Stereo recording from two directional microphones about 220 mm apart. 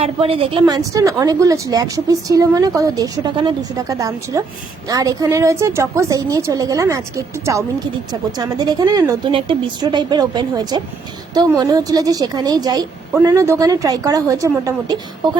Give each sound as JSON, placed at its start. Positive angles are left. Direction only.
{"t": 0.0, "sound": "a woman's voice", "side_deg": -25}